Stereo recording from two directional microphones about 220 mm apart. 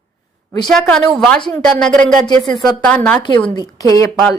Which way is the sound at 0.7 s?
Centre (ahead or behind).